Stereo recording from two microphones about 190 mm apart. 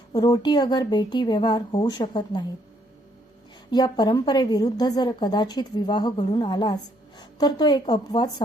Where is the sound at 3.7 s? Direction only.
20° left (ahead or behind).